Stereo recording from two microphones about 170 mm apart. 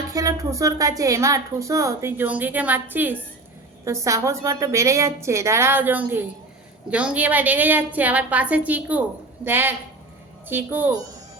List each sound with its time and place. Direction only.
0.1 s a woman's voice: 20° right (ahead or behind)